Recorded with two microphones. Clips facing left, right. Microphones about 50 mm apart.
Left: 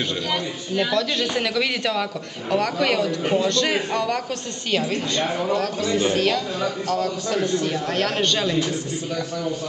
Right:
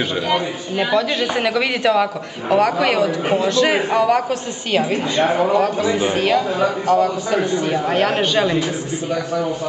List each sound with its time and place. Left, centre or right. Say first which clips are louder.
0.3 s a man's voice: right 5 dB; centre
5.5 s a man's voice: right 5 dB; centre